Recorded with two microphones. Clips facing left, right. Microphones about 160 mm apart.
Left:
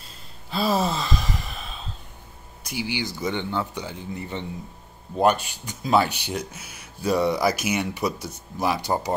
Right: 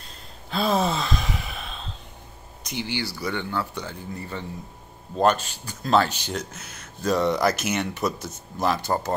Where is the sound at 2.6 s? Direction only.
10° left (ahead or behind).